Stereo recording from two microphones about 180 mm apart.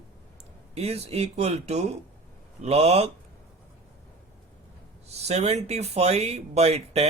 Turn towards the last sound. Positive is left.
turn(degrees=-35)  # may be behind; listen again after turning